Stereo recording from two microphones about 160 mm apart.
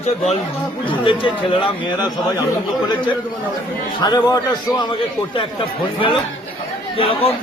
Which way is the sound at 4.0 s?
25° left (ahead or behind).